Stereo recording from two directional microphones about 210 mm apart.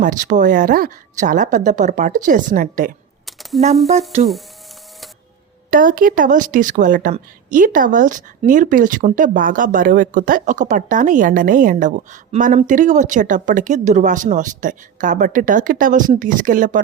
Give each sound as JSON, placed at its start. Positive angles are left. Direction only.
{"t": 0.0, "sound": "a woman's voice", "side_deg": -40}
{"t": 5.7, "sound": "a woman's voice", "side_deg": -40}